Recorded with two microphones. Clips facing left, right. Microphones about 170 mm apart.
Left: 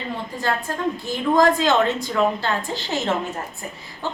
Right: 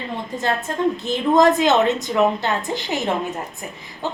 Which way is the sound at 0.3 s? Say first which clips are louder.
Right 3 dB; 20° right (ahead or behind).